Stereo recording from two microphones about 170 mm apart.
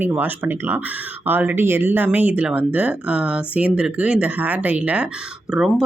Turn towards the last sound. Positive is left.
turn(degrees=0)  # may be behind; listen again after turning